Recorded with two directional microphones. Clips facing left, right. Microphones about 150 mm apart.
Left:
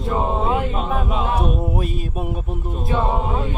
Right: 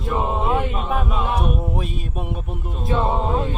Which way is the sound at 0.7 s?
25° left (ahead or behind).